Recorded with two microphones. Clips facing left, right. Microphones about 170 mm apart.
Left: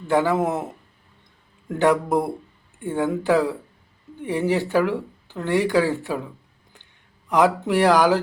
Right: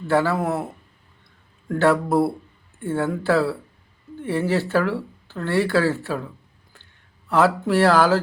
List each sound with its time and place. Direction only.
0.1 s speech: 15° left (ahead or behind)
7.3 s speech: 15° left (ahead or behind)